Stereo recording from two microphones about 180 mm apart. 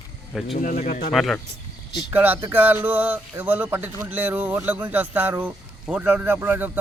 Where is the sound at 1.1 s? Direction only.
Centre (ahead or behind).